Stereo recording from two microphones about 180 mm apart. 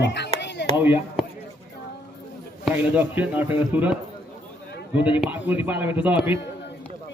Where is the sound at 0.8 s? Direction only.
10° right (ahead or behind).